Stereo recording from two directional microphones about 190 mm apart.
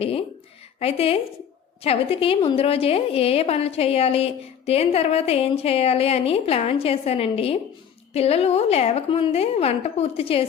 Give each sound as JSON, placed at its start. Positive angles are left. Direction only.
{"t": 0.8, "sound": "a woman's voice", "side_deg": 30}